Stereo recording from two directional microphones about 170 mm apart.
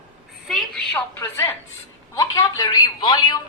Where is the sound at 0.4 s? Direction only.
Centre (ahead or behind).